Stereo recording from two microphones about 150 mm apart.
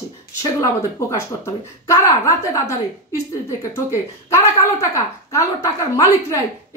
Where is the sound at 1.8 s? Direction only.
20° left (ahead or behind).